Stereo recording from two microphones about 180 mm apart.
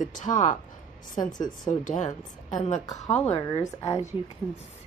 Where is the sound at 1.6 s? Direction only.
45° left (ahead or behind).